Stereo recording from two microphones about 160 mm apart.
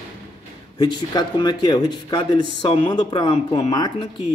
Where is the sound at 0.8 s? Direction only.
25° left (ahead or behind).